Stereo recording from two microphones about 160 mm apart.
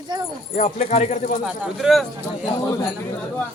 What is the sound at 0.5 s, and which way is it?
Speech, 45° left (ahead or behind).